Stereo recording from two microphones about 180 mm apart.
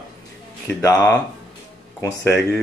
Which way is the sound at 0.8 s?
20° left (ahead or behind).